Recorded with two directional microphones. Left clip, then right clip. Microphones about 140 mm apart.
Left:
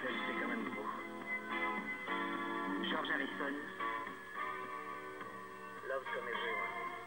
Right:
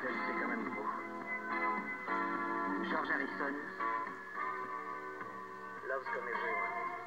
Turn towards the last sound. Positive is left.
turn(degrees=-20)  # may be behind; listen again after turning